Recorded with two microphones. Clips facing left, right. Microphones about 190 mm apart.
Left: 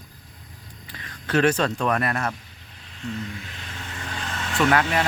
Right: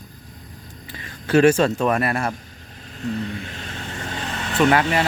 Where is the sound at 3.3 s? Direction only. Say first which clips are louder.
Right 6 dB; 50° right (ahead or behind).